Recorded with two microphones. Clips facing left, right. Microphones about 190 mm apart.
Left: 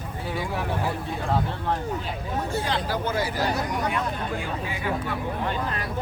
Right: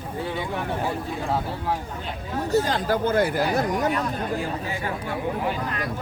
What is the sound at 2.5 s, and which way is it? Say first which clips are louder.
Speech: right 7 dB; 40° right (ahead or behind).